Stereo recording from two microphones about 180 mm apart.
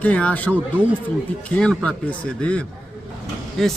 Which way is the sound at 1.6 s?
5° left (ahead or behind).